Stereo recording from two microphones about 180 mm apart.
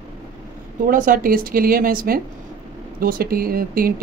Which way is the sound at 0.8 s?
50° right (ahead or behind).